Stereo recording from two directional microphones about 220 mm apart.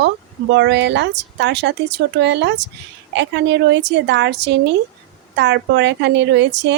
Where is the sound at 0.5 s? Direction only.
50° right (ahead or behind).